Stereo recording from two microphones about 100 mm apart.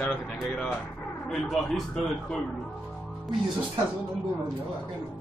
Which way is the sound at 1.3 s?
5° left (ahead or behind).